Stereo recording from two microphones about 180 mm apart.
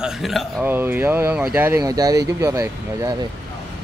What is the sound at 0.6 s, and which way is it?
A man's voice, 10° right (ahead or behind).